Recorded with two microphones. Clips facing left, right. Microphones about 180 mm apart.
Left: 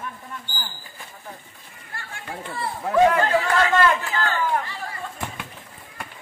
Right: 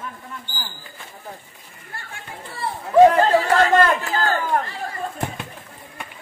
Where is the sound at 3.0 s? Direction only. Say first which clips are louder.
Right 4 dB; 35° right (ahead or behind).